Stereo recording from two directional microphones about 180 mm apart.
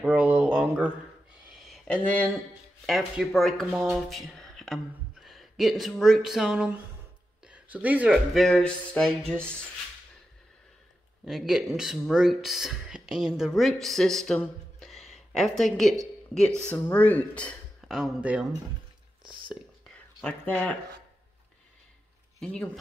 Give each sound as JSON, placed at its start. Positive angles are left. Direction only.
{"t": 0.0, "sound": "a sound", "side_deg": -10}
{"t": 2.9, "sound": "speech", "side_deg": 0}
{"t": 11.2, "sound": "speech", "side_deg": 0}
{"t": 20.2, "sound": "speech", "side_deg": 5}
{"t": 22.4, "sound": "speech", "side_deg": 5}